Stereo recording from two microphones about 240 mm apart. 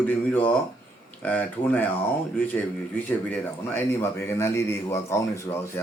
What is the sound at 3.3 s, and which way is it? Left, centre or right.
A man's voice, centre.